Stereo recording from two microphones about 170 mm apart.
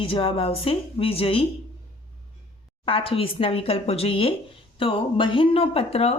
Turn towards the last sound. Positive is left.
turn(degrees=35)  # may be behind; listen again after turning